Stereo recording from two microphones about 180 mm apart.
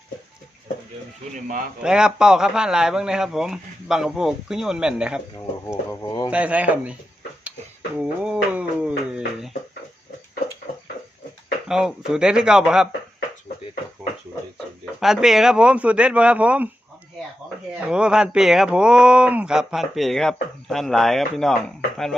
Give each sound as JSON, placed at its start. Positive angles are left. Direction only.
{"t": 1.8, "sound": "speech", "side_deg": -5}
{"t": 5.9, "sound": "a sound", "side_deg": 20}
{"t": 6.3, "sound": "speech", "side_deg": -5}
{"t": 7.9, "sound": "a sound", "side_deg": -5}
{"t": 11.7, "sound": "speech", "side_deg": -5}
{"t": 15.0, "sound": "speech", "side_deg": 0}
{"t": 17.7, "sound": "speech", "side_deg": -5}